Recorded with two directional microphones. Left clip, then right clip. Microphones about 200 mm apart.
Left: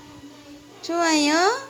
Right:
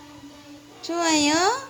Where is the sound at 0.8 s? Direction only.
Centre (ahead or behind).